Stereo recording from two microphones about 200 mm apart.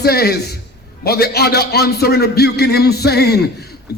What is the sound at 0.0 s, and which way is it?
Music, 50° left (ahead or behind).